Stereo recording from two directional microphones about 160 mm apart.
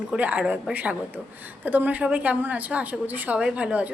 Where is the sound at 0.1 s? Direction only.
10° right (ahead or behind).